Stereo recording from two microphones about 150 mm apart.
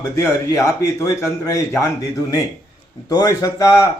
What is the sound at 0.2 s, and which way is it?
A man's voice, 20° left (ahead or behind).